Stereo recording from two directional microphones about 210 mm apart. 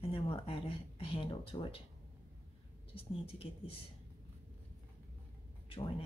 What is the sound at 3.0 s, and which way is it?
Speech, 25° left (ahead or behind).